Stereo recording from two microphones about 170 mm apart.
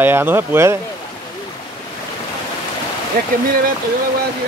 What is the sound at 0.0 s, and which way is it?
Speech, 10° right (ahead or behind).